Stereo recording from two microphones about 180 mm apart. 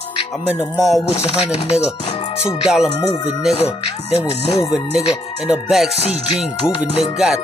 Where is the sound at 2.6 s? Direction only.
Centre (ahead or behind).